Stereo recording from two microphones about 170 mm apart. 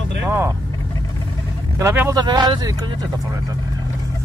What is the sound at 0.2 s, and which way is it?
Vehicle, 15° right (ahead or behind).